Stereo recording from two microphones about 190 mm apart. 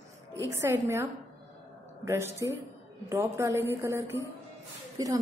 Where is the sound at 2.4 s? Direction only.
15° right (ahead or behind).